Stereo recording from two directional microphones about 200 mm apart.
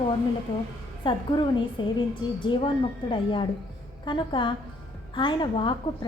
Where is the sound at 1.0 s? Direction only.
25° left (ahead or behind).